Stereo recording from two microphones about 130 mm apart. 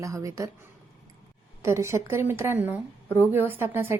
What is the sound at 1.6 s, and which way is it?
A woman's voice, 20° right (ahead or behind).